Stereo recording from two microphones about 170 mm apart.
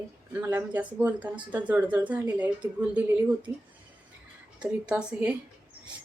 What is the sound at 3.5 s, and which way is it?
Speech, 25° left (ahead or behind).